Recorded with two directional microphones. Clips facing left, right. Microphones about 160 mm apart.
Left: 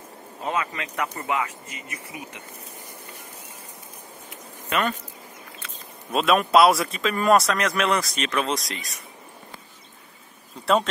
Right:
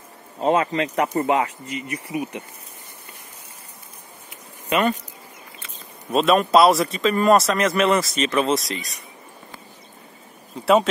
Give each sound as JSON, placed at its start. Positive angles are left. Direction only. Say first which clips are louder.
{"t": 0.4, "sound": "speech", "louder": "right 9 dB", "side_deg": -30}
{"t": 4.6, "sound": "speech", "louder": "right 5 dB", "side_deg": -10}
{"t": 6.1, "sound": "speech", "louder": "right 2 dB", "side_deg": 0}
{"t": 10.6, "sound": "speech", "louder": "right 4 dB", "side_deg": -5}